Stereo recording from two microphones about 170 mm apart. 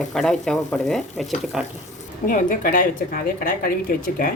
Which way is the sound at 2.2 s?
55° left (ahead or behind).